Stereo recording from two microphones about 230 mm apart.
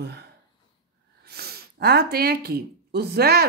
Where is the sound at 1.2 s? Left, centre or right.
Right.